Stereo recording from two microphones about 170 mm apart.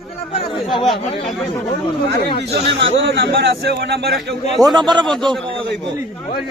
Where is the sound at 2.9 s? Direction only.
90° right; by 4.1 s 75° right (ahead or behind).